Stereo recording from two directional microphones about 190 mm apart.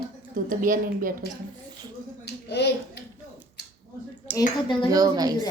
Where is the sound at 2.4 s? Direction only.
60° left (ahead or behind).